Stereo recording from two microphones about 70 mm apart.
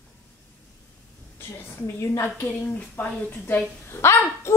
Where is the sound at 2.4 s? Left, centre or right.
Left.